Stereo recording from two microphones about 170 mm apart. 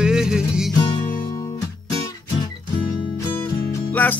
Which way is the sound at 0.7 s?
20° left (ahead or behind).